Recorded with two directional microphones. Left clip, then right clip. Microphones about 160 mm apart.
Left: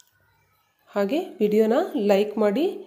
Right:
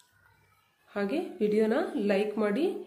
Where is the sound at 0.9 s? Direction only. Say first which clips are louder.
Left 7 dB; 40° left (ahead or behind).